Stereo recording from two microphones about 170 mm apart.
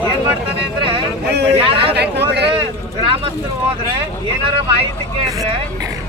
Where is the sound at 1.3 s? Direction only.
80° right.